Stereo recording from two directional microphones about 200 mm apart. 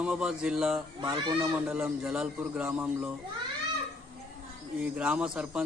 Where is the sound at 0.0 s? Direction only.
5° right (ahead or behind).